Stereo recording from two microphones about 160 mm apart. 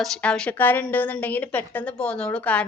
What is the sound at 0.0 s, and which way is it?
A woman's voice, 5° left (ahead or behind).